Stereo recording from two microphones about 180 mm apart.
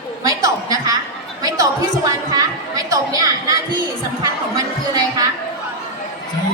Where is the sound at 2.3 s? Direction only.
20° right (ahead or behind).